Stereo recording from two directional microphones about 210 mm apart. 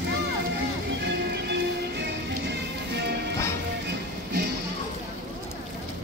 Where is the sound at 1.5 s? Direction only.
55° right (ahead or behind).